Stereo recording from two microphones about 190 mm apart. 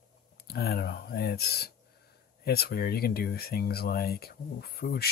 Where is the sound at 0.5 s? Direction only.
55° left (ahead or behind).